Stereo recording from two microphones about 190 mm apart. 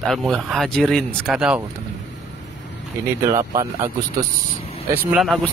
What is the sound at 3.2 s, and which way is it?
Speech, 15° right (ahead or behind).